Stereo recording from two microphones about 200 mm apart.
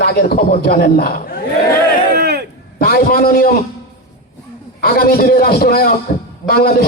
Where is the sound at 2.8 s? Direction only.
50° left (ahead or behind).